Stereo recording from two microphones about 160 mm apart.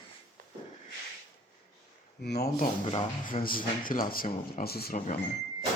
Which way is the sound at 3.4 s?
60° left (ahead or behind).